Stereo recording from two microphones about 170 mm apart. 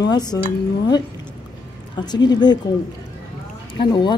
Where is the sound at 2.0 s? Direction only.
25° left (ahead or behind).